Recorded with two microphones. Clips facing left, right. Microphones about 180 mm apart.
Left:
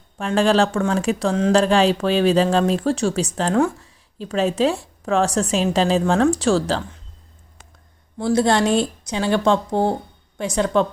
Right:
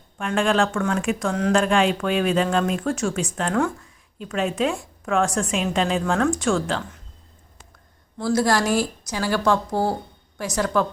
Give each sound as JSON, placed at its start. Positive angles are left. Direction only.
{"t": 0.2, "sound": "speech", "side_deg": 35}
{"t": 8.2, "sound": "a woman's voice", "side_deg": 25}